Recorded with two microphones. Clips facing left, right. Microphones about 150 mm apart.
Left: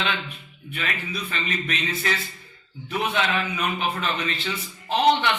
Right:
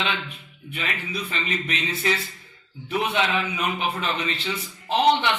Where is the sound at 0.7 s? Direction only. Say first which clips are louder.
Even; 20° right (ahead or behind).